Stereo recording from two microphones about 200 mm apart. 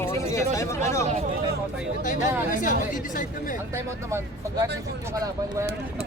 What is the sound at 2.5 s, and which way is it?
Speech, 40° left (ahead or behind).